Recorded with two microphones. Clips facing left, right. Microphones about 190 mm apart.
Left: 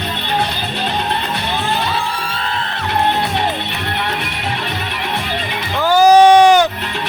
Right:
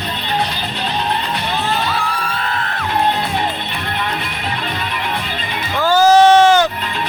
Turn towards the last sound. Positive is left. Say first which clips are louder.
# left 2 dB
turn(degrees=15)  # may be behind; listen again after turning